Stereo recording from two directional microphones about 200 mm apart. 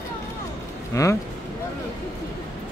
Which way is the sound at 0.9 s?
15° left (ahead or behind).